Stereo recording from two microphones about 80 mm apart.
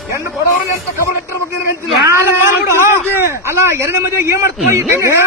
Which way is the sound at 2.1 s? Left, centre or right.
Right.